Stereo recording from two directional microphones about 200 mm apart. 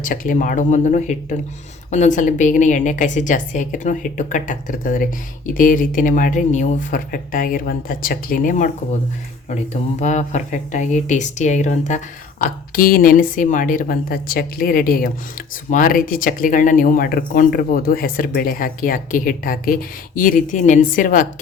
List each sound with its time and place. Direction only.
0.0 s speech: 40° left (ahead or behind)
10.0 s speech: 35° left (ahead or behind)